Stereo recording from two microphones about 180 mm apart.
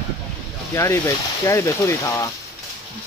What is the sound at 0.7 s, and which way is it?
Speech, 15° left (ahead or behind).